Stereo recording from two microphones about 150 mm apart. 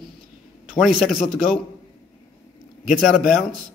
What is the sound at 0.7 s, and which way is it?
Speech, centre (ahead or behind).